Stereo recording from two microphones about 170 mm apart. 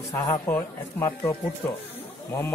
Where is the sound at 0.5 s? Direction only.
10° left (ahead or behind).